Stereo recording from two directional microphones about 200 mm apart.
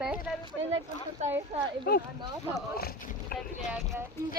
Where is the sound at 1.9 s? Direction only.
45° left (ahead or behind).